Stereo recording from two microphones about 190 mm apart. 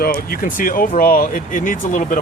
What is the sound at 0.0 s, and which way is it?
Speech, 50° left (ahead or behind).